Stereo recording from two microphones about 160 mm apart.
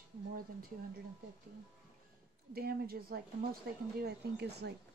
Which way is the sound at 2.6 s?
75° right (ahead or behind).